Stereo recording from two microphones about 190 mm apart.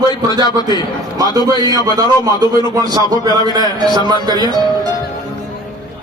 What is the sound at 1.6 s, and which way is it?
A man's voice, 20° right (ahead or behind).